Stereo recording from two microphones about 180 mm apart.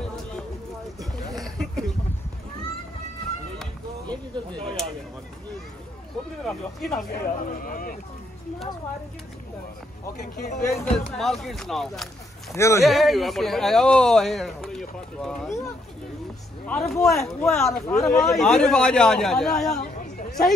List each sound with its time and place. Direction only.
1.4 s a sound: centre (ahead or behind)
6.4 s speech: centre (ahead or behind)
7.1 s speech: 50° left (ahead or behind)
10.2 s speech: 50° left (ahead or behind)
10.8 s speech: centre (ahead or behind)
12.5 s speech: 15° left (ahead or behind)
12.8 s speech: centre (ahead or behind)
16.6 s speech: 5° left (ahead or behind)
19.8 s chatter: 50° left (ahead or behind)